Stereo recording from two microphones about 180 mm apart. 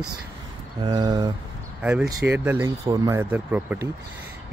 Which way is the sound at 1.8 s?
5° right (ahead or behind).